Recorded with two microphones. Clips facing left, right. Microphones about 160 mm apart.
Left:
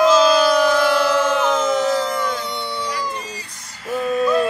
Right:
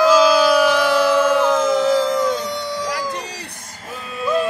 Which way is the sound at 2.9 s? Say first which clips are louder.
Right 1 dB; 80° right.